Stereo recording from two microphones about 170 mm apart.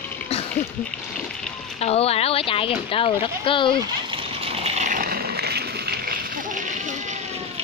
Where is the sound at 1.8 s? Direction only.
35° left (ahead or behind).